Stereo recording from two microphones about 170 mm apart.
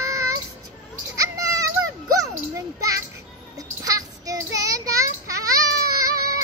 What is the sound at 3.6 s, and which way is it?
Child singing, 20° right (ahead or behind).